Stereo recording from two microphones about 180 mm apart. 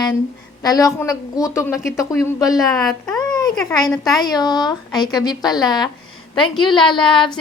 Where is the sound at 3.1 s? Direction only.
20° left (ahead or behind).